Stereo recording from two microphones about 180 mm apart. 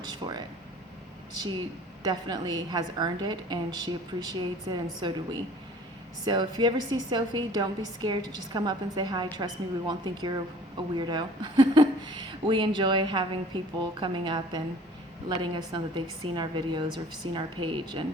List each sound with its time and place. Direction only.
2.0 s a woman's voice: 25° right (ahead or behind)